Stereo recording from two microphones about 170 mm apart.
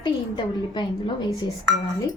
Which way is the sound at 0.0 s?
25° left (ahead or behind).